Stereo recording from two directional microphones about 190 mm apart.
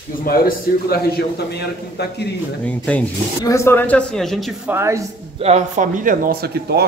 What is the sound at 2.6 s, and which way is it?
Speech, 5° left (ahead or behind).